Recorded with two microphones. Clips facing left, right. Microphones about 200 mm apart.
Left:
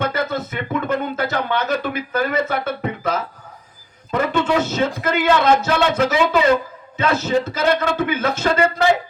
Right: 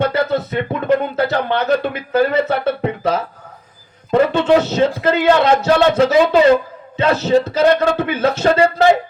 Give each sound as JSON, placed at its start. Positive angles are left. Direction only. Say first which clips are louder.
{"t": 0.0, "sound": "speech", "louder": "right 5 dB", "side_deg": -35}